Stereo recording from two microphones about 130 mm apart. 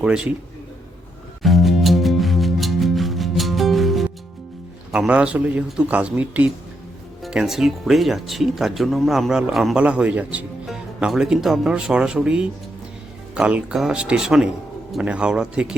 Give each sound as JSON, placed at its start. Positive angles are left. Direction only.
{"t": 0.0, "sound": "speech", "side_deg": -5}
{"t": 1.4, "sound": "music", "side_deg": 0}
{"t": 4.9, "sound": "speech", "side_deg": -10}